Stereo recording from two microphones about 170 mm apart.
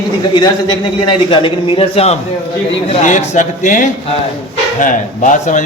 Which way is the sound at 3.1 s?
45° left (ahead or behind).